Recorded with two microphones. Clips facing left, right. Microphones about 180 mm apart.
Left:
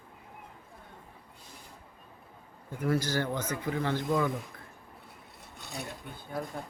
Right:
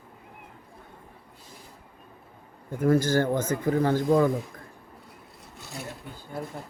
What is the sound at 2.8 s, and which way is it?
Speech, 50° right (ahead or behind).